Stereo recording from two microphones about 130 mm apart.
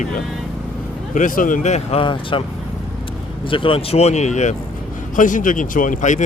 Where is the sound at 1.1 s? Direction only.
85° left; by 2.0 s 65° left (ahead or behind).